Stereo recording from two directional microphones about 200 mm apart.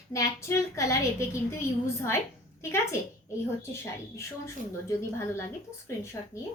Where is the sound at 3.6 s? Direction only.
10° left (ahead or behind).